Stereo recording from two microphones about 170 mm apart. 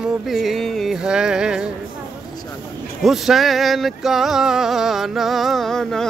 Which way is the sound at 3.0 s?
Centre (ahead or behind).